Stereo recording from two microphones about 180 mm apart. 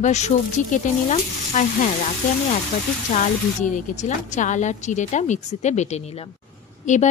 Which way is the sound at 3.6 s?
45° left (ahead or behind).